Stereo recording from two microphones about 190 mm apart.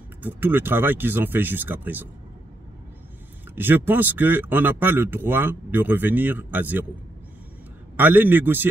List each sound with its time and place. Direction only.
0.2 s speech: 10° right (ahead or behind)
3.5 s speech: 10° right (ahead or behind)
7.9 s speech: 10° right (ahead or behind)